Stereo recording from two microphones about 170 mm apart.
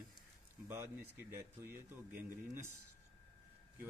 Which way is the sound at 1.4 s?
15° right (ahead or behind).